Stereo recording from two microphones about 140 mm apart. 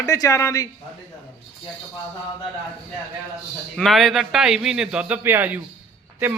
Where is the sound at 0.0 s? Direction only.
25° left (ahead or behind).